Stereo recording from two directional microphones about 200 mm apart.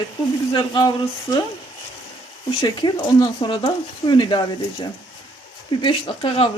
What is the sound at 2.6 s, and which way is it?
Speech, 20° left (ahead or behind).